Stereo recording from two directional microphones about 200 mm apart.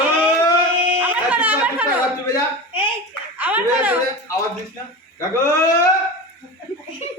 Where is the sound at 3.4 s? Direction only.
10° right (ahead or behind).